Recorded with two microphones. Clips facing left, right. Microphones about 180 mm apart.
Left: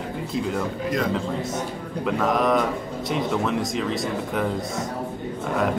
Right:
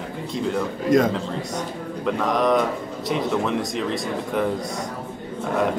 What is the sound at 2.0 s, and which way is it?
Speech, 5° left (ahead or behind).